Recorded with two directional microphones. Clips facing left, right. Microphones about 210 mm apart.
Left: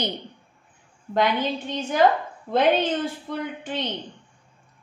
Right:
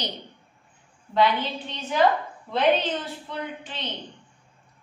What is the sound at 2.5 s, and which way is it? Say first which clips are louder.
A woman's voice: left 2 dB; 50° left (ahead or behind).